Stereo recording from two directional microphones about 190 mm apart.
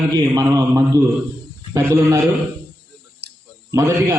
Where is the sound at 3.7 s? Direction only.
15° right (ahead or behind).